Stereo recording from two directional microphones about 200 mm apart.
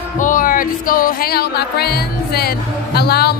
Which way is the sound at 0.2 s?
40° left (ahead or behind).